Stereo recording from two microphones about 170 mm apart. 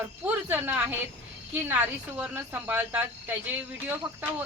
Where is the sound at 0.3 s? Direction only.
10° right (ahead or behind).